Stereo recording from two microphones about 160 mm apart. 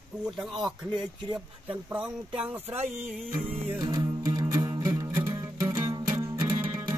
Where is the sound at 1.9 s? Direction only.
5° right (ahead or behind).